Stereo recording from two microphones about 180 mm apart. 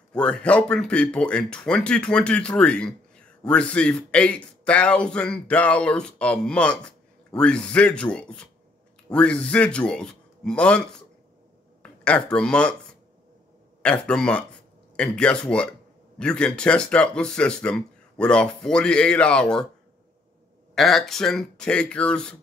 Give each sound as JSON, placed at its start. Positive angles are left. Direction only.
{"t": 0.1, "sound": "a man's voice", "side_deg": 5}
{"t": 13.8, "sound": "a man's voice", "side_deg": 5}
{"t": 20.7, "sound": "a man's voice", "side_deg": 0}